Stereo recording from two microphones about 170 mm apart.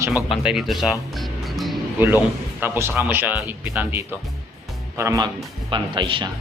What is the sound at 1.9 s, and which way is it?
A man's voice, 10° right (ahead or behind).